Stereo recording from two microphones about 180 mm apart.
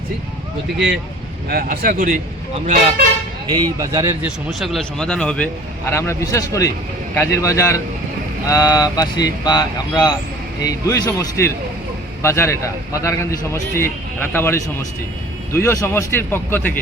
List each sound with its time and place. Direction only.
1.5 s speech: 55° right (ahead or behind)
3.5 s speech: 20° right (ahead or behind)
4.4 s a man's voice: centre (ahead or behind)